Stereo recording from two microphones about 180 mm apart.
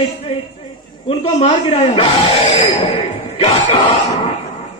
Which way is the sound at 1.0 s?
35° left (ahead or behind).